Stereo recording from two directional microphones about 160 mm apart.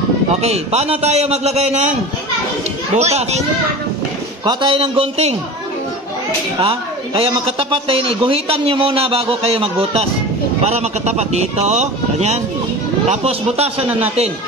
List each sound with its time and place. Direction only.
0.4 s a man's voice: 40° right (ahead or behind)
3.0 s a man's voice: 45° right (ahead or behind)
4.5 s a man's voice: 30° right (ahead or behind)
6.6 s a man's voice: 35° right (ahead or behind)